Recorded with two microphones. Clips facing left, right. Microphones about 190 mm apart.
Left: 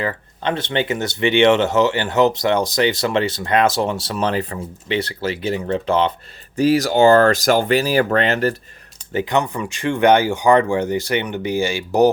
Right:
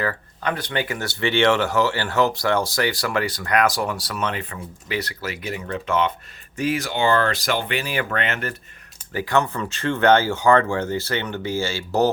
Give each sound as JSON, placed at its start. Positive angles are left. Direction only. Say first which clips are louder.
{"t": 0.0, "sound": "speech", "louder": "left 2 dB", "side_deg": 20}
{"t": 9.1, "sound": "speech", "louder": "left 2 dB", "side_deg": 20}